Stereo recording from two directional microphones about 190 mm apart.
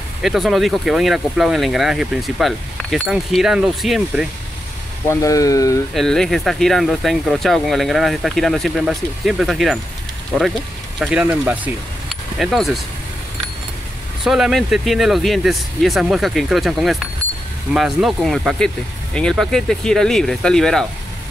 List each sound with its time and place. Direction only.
0.2 s speech: centre (ahead or behind)
5.0 s speech: 15° left (ahead or behind)
5.9 s speech: centre (ahead or behind)
14.2 s speech: centre (ahead or behind)